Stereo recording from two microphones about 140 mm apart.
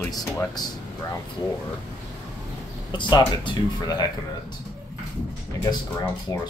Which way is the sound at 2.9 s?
35° left (ahead or behind).